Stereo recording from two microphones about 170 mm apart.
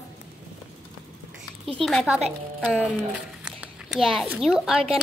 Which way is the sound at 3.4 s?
5° right (ahead or behind).